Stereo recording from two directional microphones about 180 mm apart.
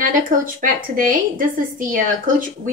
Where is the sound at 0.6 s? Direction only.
50° right (ahead or behind).